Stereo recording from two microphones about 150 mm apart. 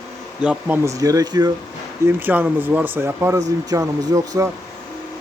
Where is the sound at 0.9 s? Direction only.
20° right (ahead or behind).